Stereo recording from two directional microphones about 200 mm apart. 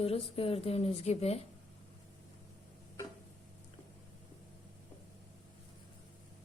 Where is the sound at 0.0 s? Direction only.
30° left (ahead or behind).